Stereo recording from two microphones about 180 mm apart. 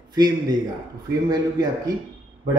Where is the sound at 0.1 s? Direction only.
25° right (ahead or behind).